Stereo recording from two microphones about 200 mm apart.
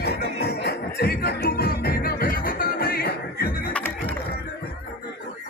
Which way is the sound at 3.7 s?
10° left (ahead or behind).